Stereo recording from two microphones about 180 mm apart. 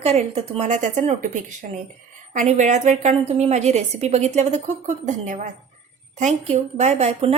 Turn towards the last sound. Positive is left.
turn(degrees=-35)  # may be behind; listen again after turning